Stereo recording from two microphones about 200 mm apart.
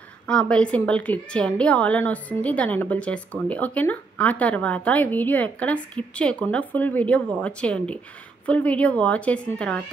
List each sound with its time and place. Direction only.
0.3 s a woman's voice: 5° left (ahead or behind)